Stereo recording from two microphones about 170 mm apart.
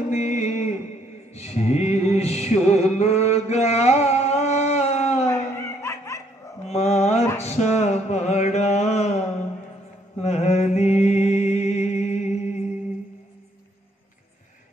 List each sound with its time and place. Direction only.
0.1 s a sound: 45° left (ahead or behind)
1.3 s music: 40° left (ahead or behind)
5.3 s snicker: 15° left (ahead or behind)
6.7 s mantra: 40° left (ahead or behind)
7.3 s a sound: 40° left (ahead or behind)
10.2 s mantra: 40° left (ahead or behind)